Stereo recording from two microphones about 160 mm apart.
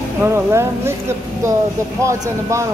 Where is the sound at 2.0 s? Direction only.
20° right (ahead or behind).